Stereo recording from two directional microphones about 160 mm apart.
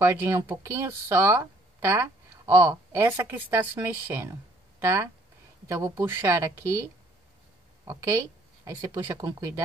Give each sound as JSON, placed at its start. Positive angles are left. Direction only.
{"t": 0.0, "sound": "a woman's voice", "side_deg": -15}
{"t": 7.8, "sound": "speech", "side_deg": -20}